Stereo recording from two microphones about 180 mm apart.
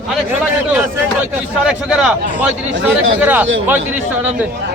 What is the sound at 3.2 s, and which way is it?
Speech, 10° right (ahead or behind).